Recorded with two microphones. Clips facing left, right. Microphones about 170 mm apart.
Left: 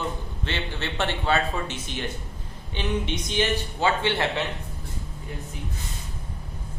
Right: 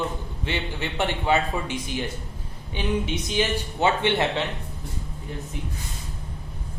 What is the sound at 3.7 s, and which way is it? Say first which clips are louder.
Speech: right 3 dB; 20° right (ahead or behind).